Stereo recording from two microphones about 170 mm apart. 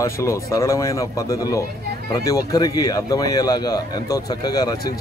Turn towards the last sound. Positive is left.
turn(degrees=20)  # may be behind; listen again after turning